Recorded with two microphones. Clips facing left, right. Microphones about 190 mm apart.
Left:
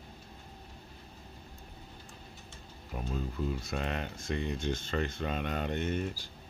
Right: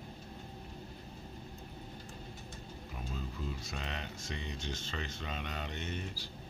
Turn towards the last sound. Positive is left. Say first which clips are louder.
# left 8 dB
turn(degrees=50)  # may be behind; listen again after turning